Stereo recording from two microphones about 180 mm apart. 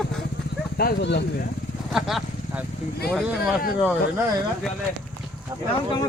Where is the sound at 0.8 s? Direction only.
65° left (ahead or behind).